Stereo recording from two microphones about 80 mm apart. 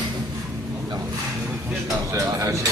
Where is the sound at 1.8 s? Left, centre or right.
Right.